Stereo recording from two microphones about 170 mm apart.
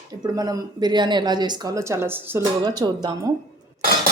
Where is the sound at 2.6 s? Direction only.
25° right (ahead or behind).